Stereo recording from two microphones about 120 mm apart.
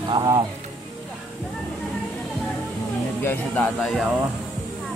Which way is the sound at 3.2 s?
15° left (ahead or behind).